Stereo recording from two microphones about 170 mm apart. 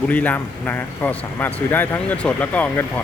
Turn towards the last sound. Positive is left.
turn(degrees=10)  # may be behind; listen again after turning